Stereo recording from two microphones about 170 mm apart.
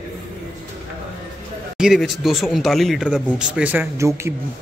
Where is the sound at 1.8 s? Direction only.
Centre (ahead or behind).